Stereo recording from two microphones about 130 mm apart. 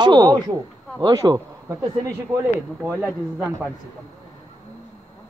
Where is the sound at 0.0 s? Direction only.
35° right (ahead or behind).